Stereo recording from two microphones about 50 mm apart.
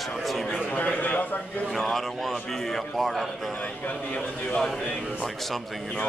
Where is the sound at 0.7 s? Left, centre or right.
Left.